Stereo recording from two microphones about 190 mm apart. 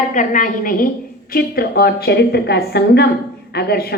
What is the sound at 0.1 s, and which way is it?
A woman's voice, 40° left (ahead or behind).